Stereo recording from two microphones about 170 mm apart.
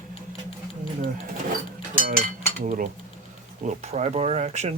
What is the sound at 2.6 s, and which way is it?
Speech, 45° right (ahead or behind).